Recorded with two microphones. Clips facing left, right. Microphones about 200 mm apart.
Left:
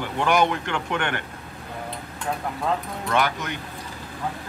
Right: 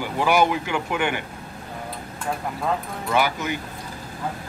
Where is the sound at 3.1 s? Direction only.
5° right (ahead or behind).